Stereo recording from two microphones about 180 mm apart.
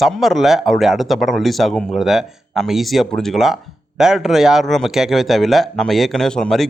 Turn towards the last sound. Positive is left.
turn(degrees=5)  # may be behind; listen again after turning